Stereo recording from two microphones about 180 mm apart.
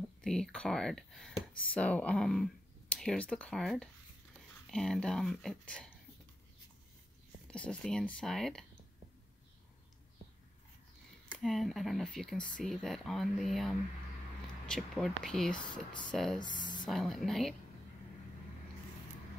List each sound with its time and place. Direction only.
0.2 s speech: 5° left (ahead or behind)
7.4 s speech: 5° left (ahead or behind)
11.3 s speech: centre (ahead or behind)
16.3 s speech: 25° left (ahead or behind)
16.8 s speech: centre (ahead or behind)